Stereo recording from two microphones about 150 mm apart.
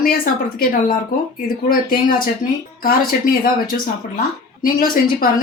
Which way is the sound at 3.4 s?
70° left (ahead or behind).